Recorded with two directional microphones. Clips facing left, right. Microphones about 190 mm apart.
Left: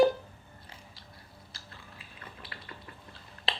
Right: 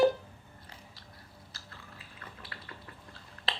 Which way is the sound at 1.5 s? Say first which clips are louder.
Even; 15° left (ahead or behind).